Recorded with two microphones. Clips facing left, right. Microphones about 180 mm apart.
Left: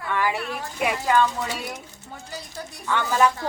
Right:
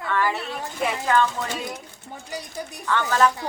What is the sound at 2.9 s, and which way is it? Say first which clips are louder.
Speech: even; 10° left (ahead or behind).